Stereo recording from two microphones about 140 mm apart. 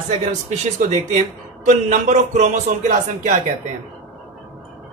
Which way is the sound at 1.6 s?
60° right (ahead or behind).